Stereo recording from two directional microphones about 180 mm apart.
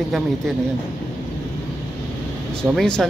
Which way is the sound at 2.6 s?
Centre (ahead or behind).